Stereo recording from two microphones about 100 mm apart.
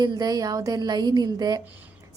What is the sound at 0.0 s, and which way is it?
A woman's voice, 45° right (ahead or behind).